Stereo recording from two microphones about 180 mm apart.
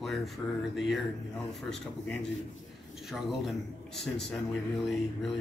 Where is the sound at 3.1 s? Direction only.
Centre (ahead or behind).